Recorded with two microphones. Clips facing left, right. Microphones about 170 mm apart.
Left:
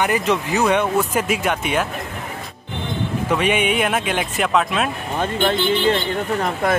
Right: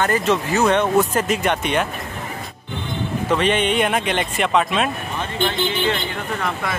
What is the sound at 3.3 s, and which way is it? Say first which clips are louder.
Speech: right 1 dB; 10° left (ahead or behind).